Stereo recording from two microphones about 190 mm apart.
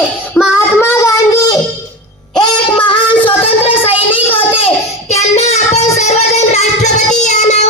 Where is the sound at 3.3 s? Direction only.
30° left (ahead or behind).